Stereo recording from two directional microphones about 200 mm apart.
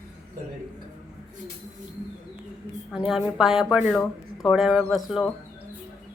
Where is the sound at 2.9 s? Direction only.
Centre (ahead or behind).